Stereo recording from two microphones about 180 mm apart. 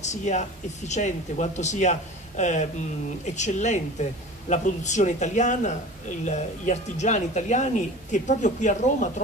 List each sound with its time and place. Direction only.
0.0 s speech: 40° left (ahead or behind)